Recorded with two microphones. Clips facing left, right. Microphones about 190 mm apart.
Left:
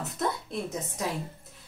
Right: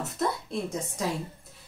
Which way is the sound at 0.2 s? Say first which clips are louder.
Right 1 dB; 5° left (ahead or behind).